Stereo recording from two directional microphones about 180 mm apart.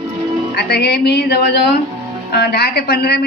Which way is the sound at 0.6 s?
65° left (ahead or behind).